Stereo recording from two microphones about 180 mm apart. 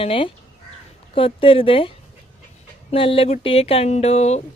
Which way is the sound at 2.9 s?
30° left (ahead or behind).